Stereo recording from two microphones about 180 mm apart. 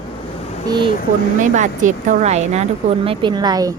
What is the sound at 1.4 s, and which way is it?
Speech, 45° right (ahead or behind).